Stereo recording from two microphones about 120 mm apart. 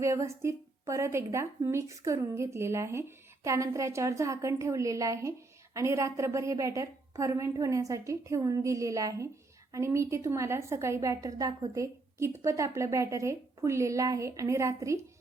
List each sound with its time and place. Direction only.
0.0 s a woman's voice: 25° right (ahead or behind)